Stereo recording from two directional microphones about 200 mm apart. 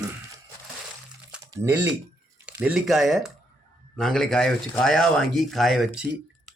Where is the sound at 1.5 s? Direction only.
15° right (ahead or behind).